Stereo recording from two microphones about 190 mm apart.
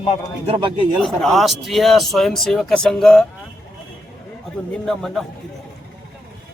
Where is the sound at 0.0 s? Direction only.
35° left (ahead or behind).